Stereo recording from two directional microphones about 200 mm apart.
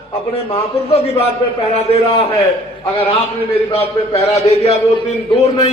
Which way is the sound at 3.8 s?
30° left (ahead or behind).